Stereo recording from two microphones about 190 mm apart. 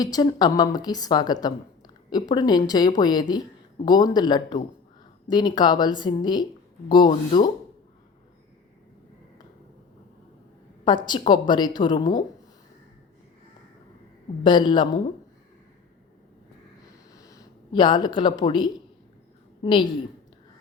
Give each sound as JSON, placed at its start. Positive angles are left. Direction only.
{"t": 0.0, "sound": "speech", "side_deg": 20}
{"t": 10.8, "sound": "speech", "side_deg": 25}
{"t": 14.4, "sound": "speech", "side_deg": 25}
{"t": 17.2, "sound": "speech", "side_deg": 20}